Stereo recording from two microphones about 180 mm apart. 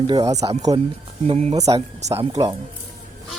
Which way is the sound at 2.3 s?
20° right (ahead or behind).